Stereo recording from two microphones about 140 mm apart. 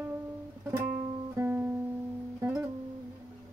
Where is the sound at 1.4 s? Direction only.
15° right (ahead or behind).